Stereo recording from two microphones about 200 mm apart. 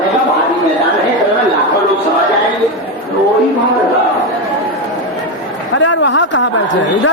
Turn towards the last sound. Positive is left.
turn(degrees=65)  # may be behind; listen again after turning